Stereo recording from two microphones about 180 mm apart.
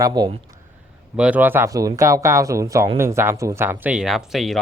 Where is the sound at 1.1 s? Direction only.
5° right (ahead or behind).